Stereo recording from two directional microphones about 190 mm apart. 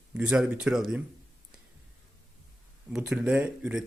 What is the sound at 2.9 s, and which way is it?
Speech, 5° right (ahead or behind).